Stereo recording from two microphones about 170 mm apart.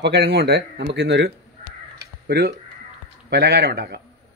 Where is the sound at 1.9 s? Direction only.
75° right (ahead or behind).